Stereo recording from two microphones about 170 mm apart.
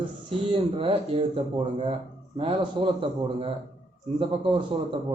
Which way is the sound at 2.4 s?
30° right (ahead or behind).